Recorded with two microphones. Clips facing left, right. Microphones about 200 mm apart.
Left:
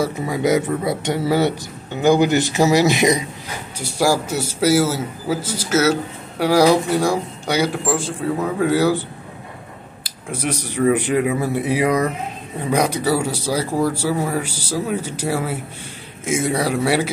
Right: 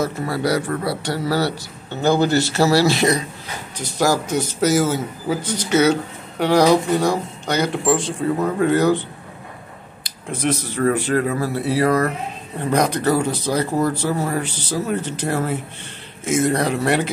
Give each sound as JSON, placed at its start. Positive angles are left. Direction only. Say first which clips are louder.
{"t": 0.0, "sound": "a man's voice", "louder": "left 2 dB", "side_deg": 15}
{"t": 0.8, "sound": "a man's voice", "louder": "left 2 dB", "side_deg": 20}
{"t": 10.0, "sound": "a man's voice", "louder": "right 3 dB", "side_deg": 10}